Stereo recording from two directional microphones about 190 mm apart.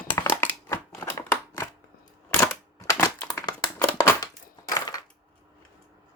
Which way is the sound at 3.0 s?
20° left (ahead or behind).